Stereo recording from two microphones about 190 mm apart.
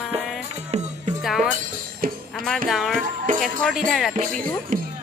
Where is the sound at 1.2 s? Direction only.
Centre (ahead or behind).